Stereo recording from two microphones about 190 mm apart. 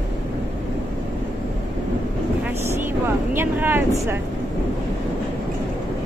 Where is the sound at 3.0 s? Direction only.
10° right (ahead or behind).